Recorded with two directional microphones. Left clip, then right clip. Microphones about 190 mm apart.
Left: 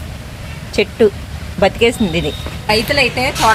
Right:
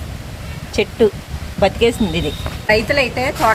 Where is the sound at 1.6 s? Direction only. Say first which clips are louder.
Left 2 dB; 20° left (ahead or behind).